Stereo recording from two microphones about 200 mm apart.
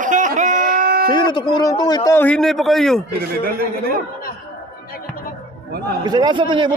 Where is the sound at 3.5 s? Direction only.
50° right (ahead or behind).